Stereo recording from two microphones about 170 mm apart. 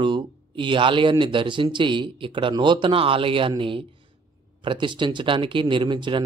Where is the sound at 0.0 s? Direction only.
30° right (ahead or behind).